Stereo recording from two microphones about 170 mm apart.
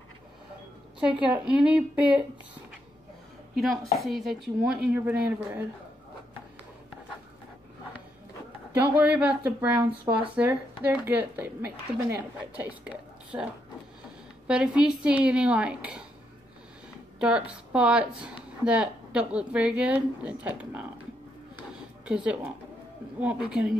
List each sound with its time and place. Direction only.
1.3 s a woman's voice: 5° right (ahead or behind)
3.5 s a woman's voice: centre (ahead or behind)
8.7 s a woman's voice: 10° right (ahead or behind)
14.5 s a woman's voice: 5° right (ahead or behind)
17.2 s a woman's voice: 5° right (ahead or behind)
21.7 s a sound: 5° right (ahead or behind)
23.2 s a woman's voice: 10° right (ahead or behind)